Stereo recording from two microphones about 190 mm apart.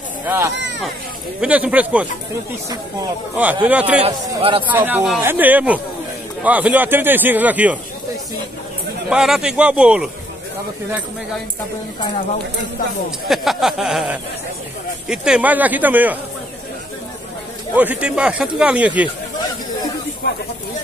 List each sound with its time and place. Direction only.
1.4 s speech: 5° right (ahead or behind)
3.6 s speech: 10° right (ahead or behind)
4.0 s a man's voice: 30° right (ahead or behind)
4.6 s speech: 10° right (ahead or behind)
9.1 s speech: 5° right (ahead or behind)
13.3 s speech: centre (ahead or behind)
17.7 s speech: 5° right (ahead or behind)
20.2 s speech: 60° left (ahead or behind)